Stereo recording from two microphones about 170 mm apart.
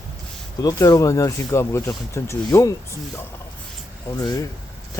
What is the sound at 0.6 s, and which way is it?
Speech, 20° left (ahead or behind).